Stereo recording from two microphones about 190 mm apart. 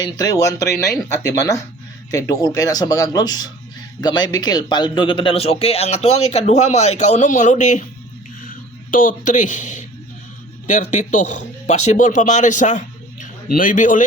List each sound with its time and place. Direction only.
0.0 s a man's voice: 20° left (ahead or behind); by 7.9 s 40° left (ahead or behind)
8.9 s a man's voice: 45° left (ahead or behind)